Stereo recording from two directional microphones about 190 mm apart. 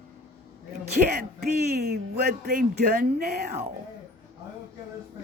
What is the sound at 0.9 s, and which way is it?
Speech, 55° right (ahead or behind).